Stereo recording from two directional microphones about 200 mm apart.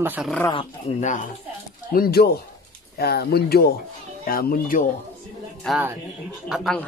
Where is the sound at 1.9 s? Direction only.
50° left (ahead or behind).